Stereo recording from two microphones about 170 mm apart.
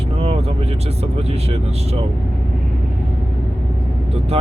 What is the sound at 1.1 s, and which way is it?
Speech, 35° right (ahead or behind).